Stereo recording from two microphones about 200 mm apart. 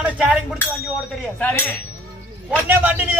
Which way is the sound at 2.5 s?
10° right (ahead or behind).